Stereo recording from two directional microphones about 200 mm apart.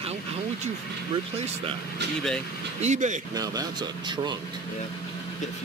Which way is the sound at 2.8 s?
35° right (ahead or behind).